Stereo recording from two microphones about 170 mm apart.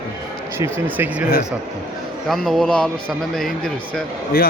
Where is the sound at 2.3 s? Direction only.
Centre (ahead or behind).